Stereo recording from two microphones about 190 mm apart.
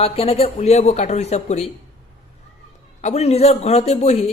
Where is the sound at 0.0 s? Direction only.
30° left (ahead or behind).